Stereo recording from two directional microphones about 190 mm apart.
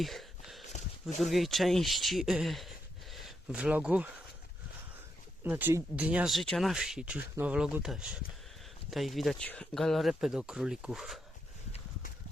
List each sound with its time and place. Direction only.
0.0 s a sound: centre (ahead or behind)
1.2 s speech: centre (ahead or behind)
5.4 s speech: 10° right (ahead or behind)